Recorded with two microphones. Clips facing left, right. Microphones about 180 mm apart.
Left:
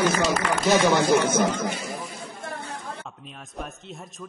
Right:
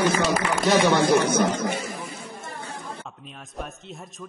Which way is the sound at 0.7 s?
30° right (ahead or behind).